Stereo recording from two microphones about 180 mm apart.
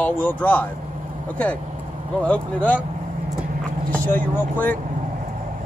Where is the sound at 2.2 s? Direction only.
5° left (ahead or behind).